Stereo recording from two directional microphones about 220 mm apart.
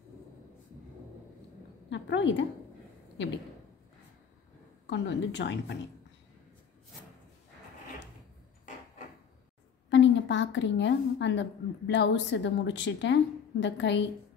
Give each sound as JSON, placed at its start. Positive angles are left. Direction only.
{"t": 1.9, "sound": "a woman's voice", "side_deg": 55}
{"t": 4.8, "sound": "a woman's voice", "side_deg": 55}
{"t": 9.8, "sound": "a woman's voice", "side_deg": 55}